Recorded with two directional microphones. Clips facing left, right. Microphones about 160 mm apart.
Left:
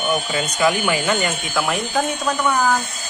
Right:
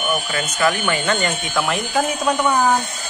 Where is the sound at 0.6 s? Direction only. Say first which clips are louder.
Left 1 dB; 15° left (ahead or behind).